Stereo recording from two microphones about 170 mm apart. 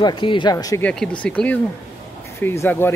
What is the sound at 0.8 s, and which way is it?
Speech, 5° left (ahead or behind).